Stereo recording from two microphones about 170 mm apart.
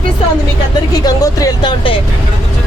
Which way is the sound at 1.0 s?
20° left (ahead or behind).